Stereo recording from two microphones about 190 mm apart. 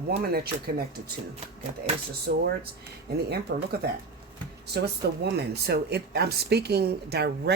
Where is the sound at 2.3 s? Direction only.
50° right (ahead or behind).